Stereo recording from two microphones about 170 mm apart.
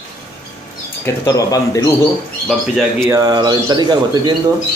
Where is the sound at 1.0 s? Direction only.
20° left (ahead or behind).